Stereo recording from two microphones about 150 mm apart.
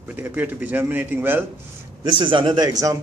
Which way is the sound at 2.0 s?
35° right (ahead or behind).